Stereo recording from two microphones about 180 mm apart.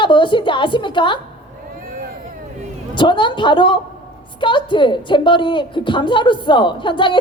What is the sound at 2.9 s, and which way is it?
Speech, 25° left (ahead or behind).